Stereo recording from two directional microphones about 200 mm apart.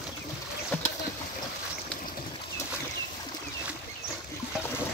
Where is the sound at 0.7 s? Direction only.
10° left (ahead or behind).